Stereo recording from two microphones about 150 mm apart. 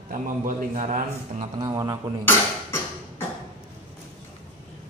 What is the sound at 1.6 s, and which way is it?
Speech, 25° right (ahead or behind).